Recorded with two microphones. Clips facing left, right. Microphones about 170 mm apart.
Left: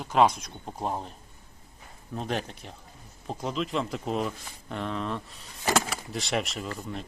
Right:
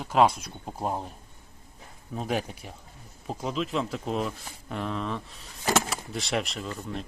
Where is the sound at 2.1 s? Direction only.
5° right (ahead or behind).